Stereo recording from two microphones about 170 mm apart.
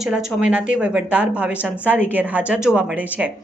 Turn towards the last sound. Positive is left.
turn(degrees=-5)  # may be behind; listen again after turning